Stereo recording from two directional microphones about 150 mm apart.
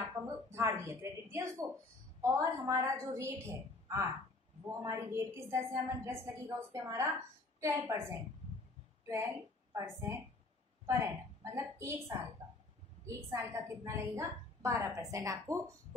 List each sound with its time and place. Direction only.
0.0 s a woman's voice: 20° right (ahead or behind)
9.1 s a woman's voice: 15° right (ahead or behind)
11.5 s a woman's voice: 20° right (ahead or behind)
13.0 s a woman's voice: 20° right (ahead or behind)